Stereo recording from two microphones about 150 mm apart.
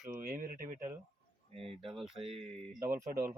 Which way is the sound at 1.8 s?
5° right (ahead or behind).